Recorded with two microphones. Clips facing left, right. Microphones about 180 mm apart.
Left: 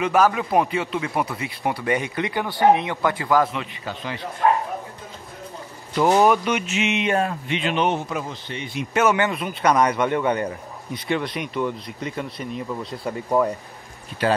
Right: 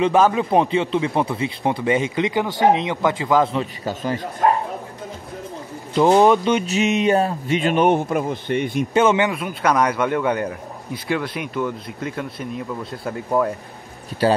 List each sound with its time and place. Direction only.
0.0 s speech: 25° right (ahead or behind)
3.5 s a man's voice: 40° right (ahead or behind)
5.9 s speech: 25° right (ahead or behind); by 8.8 s 55° right (ahead or behind)
8.9 s speech: 25° right (ahead or behind)
9.3 s a man's voice: 5° right (ahead or behind)